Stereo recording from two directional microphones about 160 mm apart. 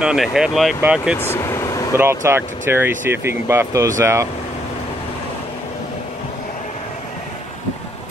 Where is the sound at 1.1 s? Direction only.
15° left (ahead or behind).